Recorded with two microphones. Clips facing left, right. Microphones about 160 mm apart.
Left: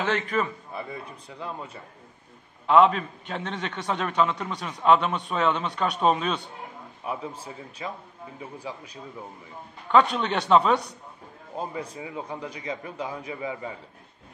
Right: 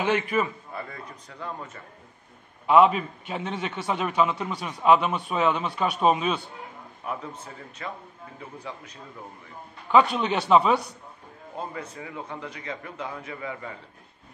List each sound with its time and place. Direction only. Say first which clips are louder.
0.0 s a man's voice: right 2 dB; 10° right (ahead or behind)
0.8 s a man's voice: left 3 dB; 15° left (ahead or behind)
2.6 s a man's voice: even; 10° right (ahead or behind)
7.8 s a man's voice: left 1 dB; 15° left (ahead or behind)
9.8 s speech: right 1 dB; 5° right (ahead or behind)
11.5 s a man's voice: left 2 dB; 15° left (ahead or behind)